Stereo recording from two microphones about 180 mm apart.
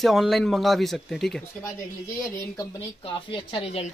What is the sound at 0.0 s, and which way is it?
Speech, centre (ahead or behind).